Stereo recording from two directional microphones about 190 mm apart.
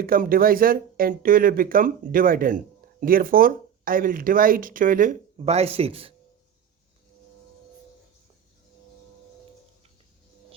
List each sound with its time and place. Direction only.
0.0 s speech: 50° right (ahead or behind); by 6.1 s 30° right (ahead or behind)